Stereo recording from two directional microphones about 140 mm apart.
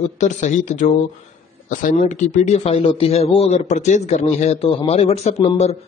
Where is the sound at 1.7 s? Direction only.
75° left (ahead or behind).